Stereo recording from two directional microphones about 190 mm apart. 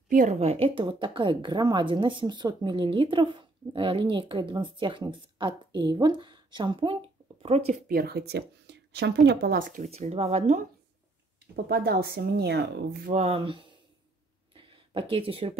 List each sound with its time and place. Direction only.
0.1 s a woman's voice: 40° right (ahead or behind)
7.9 s speech: 55° right (ahead or behind); by 10.6 s 35° right (ahead or behind)
11.5 s speech: 55° right (ahead or behind)
13.1 s a woman's voice: 35° right (ahead or behind)
14.5 s a sound: 25° right (ahead or behind)